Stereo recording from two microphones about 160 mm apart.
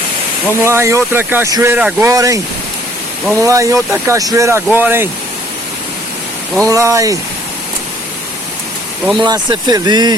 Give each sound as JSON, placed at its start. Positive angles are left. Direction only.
{"t": 0.6, "sound": "speech", "side_deg": -15}
{"t": 6.7, "sound": "speech", "side_deg": -20}
{"t": 9.1, "sound": "speech", "side_deg": -30}